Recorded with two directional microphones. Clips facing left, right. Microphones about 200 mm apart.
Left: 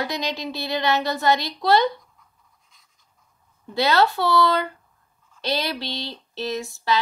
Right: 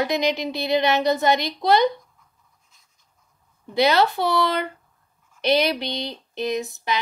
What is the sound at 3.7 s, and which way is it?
A woman's voice, 20° right (ahead or behind).